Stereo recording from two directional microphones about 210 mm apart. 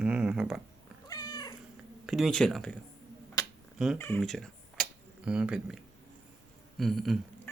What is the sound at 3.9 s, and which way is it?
Speech, 10° left (ahead or behind).